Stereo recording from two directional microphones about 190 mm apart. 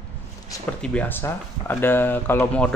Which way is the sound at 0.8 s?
5° left (ahead or behind).